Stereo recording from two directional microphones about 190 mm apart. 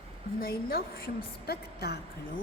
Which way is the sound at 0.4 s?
50° left (ahead or behind).